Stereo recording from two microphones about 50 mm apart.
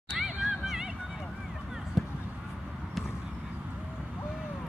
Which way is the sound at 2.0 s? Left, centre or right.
Centre.